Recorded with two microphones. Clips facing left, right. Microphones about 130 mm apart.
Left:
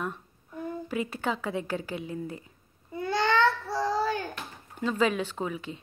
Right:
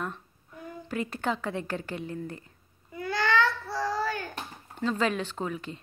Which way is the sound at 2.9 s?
25° left (ahead or behind).